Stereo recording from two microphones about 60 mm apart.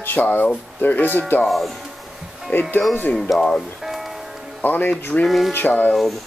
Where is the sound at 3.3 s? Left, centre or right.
Centre.